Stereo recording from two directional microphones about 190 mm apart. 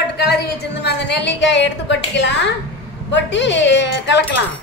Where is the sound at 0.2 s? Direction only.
60° left (ahead or behind).